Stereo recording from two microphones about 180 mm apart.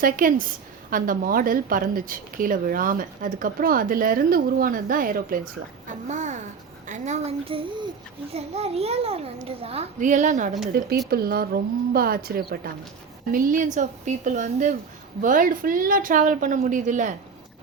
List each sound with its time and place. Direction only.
0.0 s a woman's voice: 50° right (ahead or behind)
10.7 s a woman's voice: 55° right (ahead or behind)